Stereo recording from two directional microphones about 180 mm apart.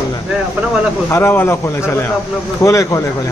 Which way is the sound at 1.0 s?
15° left (ahead or behind).